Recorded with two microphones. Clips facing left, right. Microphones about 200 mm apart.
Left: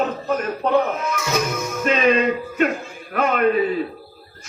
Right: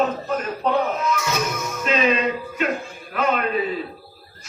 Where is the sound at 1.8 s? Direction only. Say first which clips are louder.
Left 3 dB; 50° left (ahead or behind).